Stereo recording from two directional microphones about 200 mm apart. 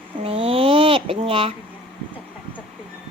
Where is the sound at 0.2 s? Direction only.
30° right (ahead or behind).